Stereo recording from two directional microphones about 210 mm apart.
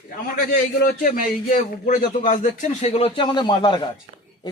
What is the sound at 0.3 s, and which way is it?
A man's voice, 45° left (ahead or behind).